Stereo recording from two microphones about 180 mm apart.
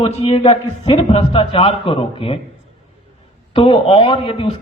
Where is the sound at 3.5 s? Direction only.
30° left (ahead or behind).